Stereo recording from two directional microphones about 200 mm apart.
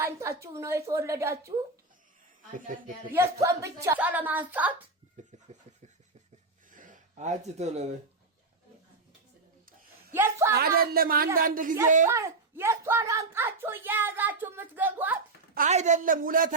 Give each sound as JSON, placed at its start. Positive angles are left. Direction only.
{"t": 0.0, "sound": "speech", "side_deg": -15}
{"t": 2.6, "sound": "a woman's voice", "side_deg": -40}
{"t": 3.1, "sound": "speech", "side_deg": -15}
{"t": 5.2, "sound": "a woman's voice", "side_deg": -35}
{"t": 6.7, "sound": "a sound", "side_deg": -40}
{"t": 10.1, "sound": "speech", "side_deg": -15}
{"t": 10.5, "sound": "speech", "side_deg": -50}
{"t": 12.0, "sound": "speech", "side_deg": -15}
{"t": 15.5, "sound": "a woman's voice", "side_deg": -40}